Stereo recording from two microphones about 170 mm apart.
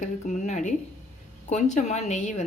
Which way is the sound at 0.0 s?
45° left (ahead or behind).